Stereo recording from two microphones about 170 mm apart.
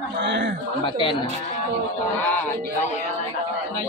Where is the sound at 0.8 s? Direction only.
30° left (ahead or behind).